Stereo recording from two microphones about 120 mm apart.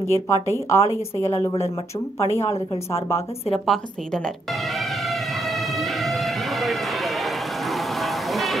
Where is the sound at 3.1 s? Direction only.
55° left (ahead or behind).